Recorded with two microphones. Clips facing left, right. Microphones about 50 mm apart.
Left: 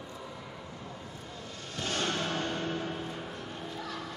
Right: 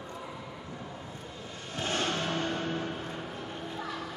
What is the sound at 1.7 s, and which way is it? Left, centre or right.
Music, right.